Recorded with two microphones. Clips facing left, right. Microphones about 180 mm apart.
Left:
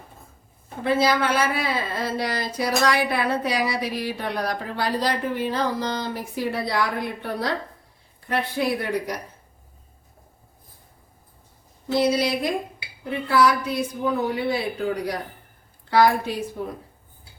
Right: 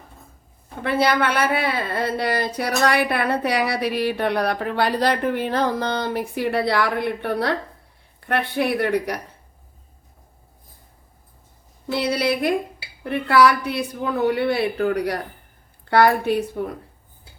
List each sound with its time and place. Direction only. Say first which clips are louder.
0.8 s speech: right 1 dB; 60° right (ahead or behind)
11.9 s speech: left 1 dB; 65° right (ahead or behind)